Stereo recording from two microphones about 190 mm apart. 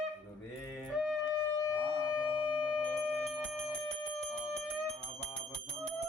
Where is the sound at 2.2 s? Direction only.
25° left (ahead or behind).